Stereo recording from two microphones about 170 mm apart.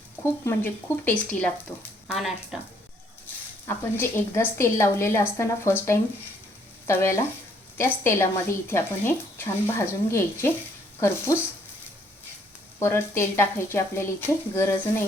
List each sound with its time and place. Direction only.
0.2 s speech: 15° left (ahead or behind)
3.7 s speech: 15° left (ahead or behind)
6.8 s speech: 15° left (ahead or behind)
12.8 s speech: 15° left (ahead or behind)